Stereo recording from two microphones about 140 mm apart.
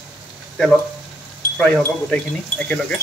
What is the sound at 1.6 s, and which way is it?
Wind chime, 5° left (ahead or behind).